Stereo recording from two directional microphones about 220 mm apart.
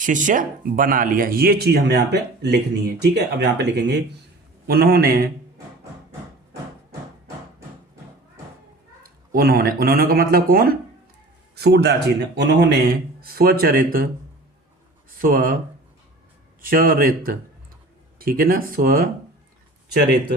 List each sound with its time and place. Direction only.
0.0 s speech: 35° right (ahead or behind)
9.0 s a man's voice: 45° right (ahead or behind)
15.2 s speech: 40° right (ahead or behind)
16.6 s speech: 40° right (ahead or behind)